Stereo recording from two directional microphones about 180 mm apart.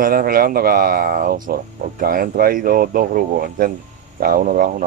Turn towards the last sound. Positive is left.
turn(degrees=-45)  # may be behind; listen again after turning